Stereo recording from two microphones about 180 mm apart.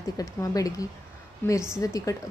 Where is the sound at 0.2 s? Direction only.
20° left (ahead or behind).